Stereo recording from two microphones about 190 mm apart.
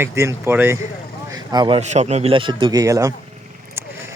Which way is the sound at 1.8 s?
35° right (ahead or behind).